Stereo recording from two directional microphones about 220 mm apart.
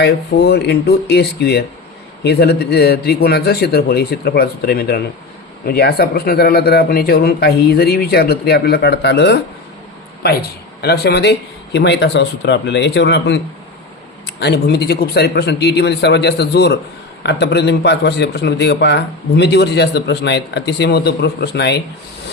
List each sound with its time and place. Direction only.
0.0 s a man's voice: 45° left (ahead or behind)
10.8 s a man's voice: 45° left (ahead or behind)